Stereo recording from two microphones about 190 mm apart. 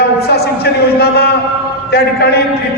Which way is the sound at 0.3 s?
55° left (ahead or behind).